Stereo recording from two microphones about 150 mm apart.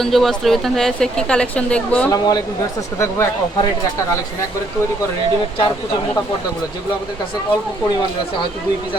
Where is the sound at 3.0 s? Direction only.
20° left (ahead or behind).